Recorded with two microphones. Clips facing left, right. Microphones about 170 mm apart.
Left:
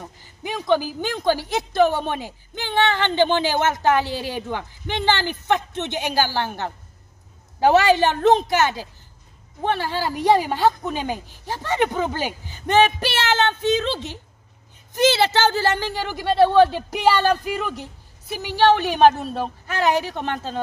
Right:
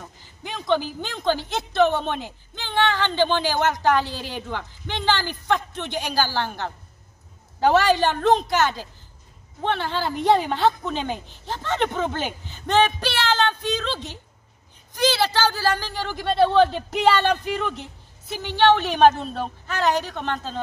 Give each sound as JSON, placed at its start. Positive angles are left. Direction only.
{"t": 0.0, "sound": "a woman's voice", "side_deg": 10}
{"t": 9.6, "sound": "a woman's voice", "side_deg": 10}
{"t": 15.3, "sound": "a woman's voice", "side_deg": 20}